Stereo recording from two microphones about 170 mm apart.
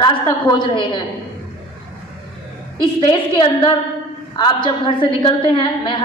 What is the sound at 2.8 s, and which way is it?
A man's voice, 30° left (ahead or behind).